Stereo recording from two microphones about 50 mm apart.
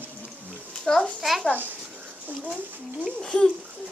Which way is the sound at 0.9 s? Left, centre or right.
Centre.